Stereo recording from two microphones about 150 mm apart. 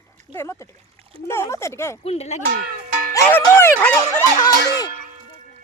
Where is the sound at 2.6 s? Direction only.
80° right.